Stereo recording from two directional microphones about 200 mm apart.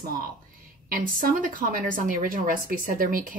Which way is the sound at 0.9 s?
45° right (ahead or behind).